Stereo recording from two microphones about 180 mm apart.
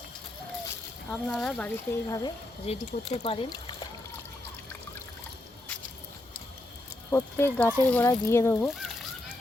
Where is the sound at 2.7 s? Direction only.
35° left (ahead or behind).